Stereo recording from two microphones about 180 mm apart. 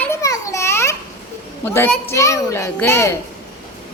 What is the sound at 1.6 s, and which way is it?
A child's voice, 10° left (ahead or behind).